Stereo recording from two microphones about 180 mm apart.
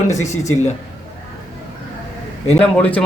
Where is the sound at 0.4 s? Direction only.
40° left (ahead or behind).